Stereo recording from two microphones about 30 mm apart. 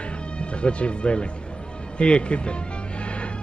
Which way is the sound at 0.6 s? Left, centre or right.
Left.